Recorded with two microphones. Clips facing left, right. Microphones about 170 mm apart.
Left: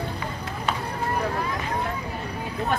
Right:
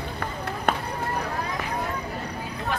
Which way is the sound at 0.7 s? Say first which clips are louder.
Right 3 dB; 55° right (ahead or behind).